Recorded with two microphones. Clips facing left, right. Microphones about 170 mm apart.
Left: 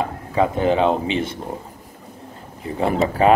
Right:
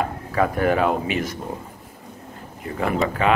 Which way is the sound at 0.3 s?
20° left (ahead or behind).